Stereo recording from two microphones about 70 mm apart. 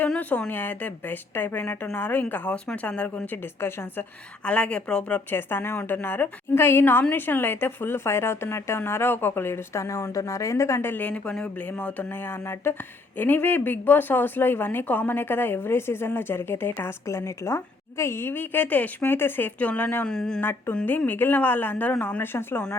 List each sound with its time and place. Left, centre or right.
0.2 s a woman's voice: left
3.6 s speech: left
4.4 s speech: centre
5.3 s speech: left
20.1 s speech: centre
20.4 s a woman's voice: left